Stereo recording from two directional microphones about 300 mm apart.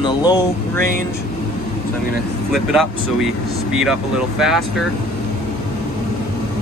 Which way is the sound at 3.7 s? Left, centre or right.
Centre.